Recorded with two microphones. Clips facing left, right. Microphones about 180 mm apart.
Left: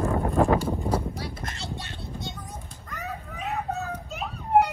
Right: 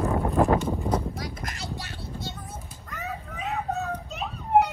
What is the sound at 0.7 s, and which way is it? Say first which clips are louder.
Clip-clop: even; 5° left (ahead or behind).